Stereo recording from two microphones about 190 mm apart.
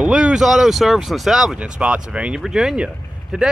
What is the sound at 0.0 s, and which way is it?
Speech, 5° right (ahead or behind).